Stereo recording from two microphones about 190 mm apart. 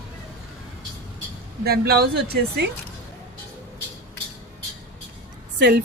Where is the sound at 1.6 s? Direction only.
55° right (ahead or behind).